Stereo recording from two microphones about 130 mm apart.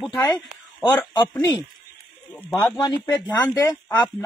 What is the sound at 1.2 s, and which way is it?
Speech, 15° left (ahead or behind).